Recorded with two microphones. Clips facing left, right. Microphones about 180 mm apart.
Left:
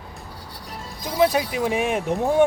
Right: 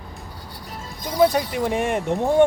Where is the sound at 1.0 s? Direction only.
5° left (ahead or behind).